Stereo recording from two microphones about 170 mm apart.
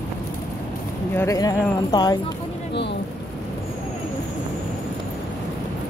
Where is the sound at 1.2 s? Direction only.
20° left (ahead or behind).